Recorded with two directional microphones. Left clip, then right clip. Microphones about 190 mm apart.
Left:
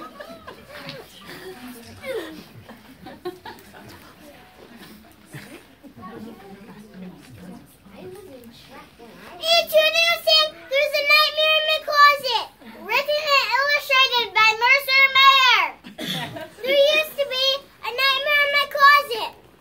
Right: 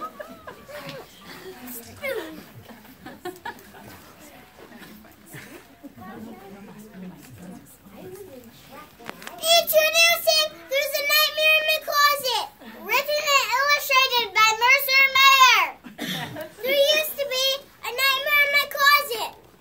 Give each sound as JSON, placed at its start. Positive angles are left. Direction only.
{"t": 0.7, "sound": "music", "side_deg": -20}
{"t": 1.2, "sound": "a sound", "side_deg": 35}
{"t": 9.4, "sound": "child singing", "side_deg": -10}
{"t": 16.0, "sound": "chuckle", "side_deg": 15}
{"t": 16.6, "sound": "child singing", "side_deg": -5}